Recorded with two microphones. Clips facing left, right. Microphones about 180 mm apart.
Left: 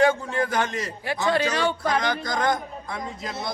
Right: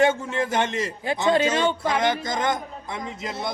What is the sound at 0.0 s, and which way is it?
A man's voice, 20° right (ahead or behind).